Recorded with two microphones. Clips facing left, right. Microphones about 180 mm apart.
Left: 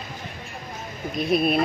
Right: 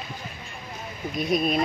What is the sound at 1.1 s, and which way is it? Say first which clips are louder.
Speech: left 3 dB; 5° left (ahead or behind).